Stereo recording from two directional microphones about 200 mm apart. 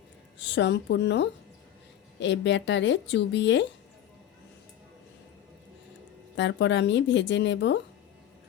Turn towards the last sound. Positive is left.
turn(degrees=60)  # may be behind; listen again after turning